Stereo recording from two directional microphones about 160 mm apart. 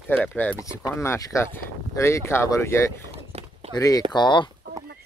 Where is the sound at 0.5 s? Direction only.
20° left (ahead or behind).